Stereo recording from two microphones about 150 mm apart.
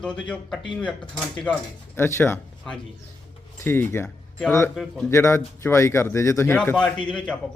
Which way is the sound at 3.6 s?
15° left (ahead or behind).